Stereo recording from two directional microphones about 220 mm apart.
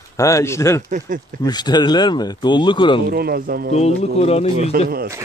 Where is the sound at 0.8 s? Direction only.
35° right (ahead or behind).